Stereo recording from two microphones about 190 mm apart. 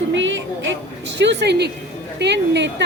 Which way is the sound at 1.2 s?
65° right (ahead or behind).